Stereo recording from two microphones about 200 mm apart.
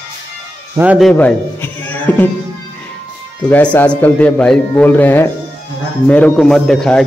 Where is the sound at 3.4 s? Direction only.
10° left (ahead or behind).